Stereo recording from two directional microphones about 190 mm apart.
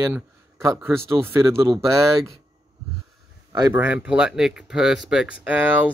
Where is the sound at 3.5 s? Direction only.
15° right (ahead or behind).